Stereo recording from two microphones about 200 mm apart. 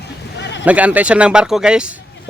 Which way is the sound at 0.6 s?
5° right (ahead or behind).